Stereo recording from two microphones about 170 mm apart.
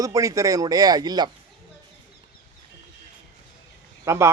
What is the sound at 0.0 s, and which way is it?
Speech, 20° right (ahead or behind).